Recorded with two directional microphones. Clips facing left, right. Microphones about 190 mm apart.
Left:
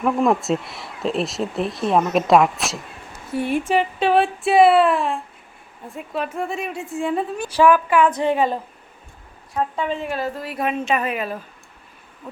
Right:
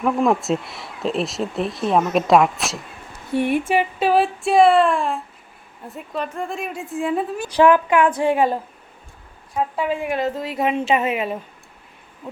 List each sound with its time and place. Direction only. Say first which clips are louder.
0.0 s speech: even; centre (ahead or behind)
3.3 s a woman's voice: right 3 dB; 25° right (ahead or behind)
3.7 s speech: even; 5° right (ahead or behind)
7.5 s speech: right 1 dB; 20° right (ahead or behind)
9.6 s a woman's voice: right 1 dB; 10° right (ahead or behind); by 11.4 s 25° right (ahead or behind)